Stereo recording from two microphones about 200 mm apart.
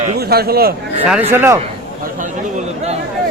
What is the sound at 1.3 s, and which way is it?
Speech, 10° right (ahead or behind).